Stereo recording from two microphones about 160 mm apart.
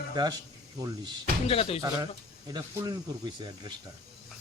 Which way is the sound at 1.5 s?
35° left (ahead or behind).